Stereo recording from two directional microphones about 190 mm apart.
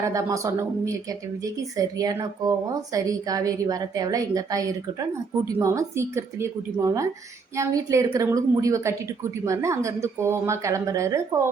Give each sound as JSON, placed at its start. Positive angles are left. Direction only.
{"t": 0.0, "sound": "a woman's voice", "side_deg": -15}